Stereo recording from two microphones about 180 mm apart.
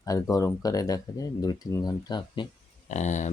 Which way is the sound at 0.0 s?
20° left (ahead or behind).